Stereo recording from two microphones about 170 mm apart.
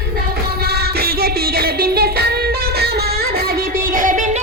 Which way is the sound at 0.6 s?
70° right (ahead or behind).